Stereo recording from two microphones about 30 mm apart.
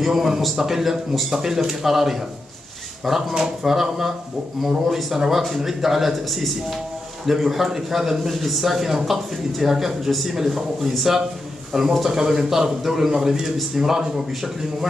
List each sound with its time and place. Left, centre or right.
0.0 s a man's voice: centre
3.3 s speech: right
3.7 s speech: centre
10.9 s a man's voice: centre